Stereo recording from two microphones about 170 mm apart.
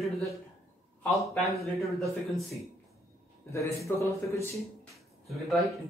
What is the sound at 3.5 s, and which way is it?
Speech, 15° left (ahead or behind).